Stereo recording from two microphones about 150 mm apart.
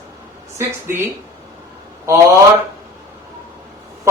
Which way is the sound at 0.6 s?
20° right (ahead or behind).